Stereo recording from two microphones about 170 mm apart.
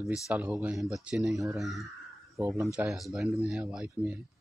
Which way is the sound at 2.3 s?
15° right (ahead or behind).